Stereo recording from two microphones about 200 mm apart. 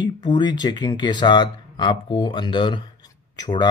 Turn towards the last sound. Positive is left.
turn(degrees=20)  # may be behind; listen again after turning